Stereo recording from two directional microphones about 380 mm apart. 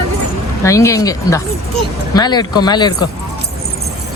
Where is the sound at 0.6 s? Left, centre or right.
Centre.